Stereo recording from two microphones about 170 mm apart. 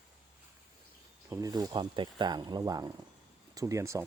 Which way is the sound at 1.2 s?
20° right (ahead or behind).